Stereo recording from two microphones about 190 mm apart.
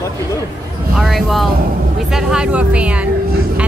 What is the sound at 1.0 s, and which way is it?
A woman's voice, centre (ahead or behind).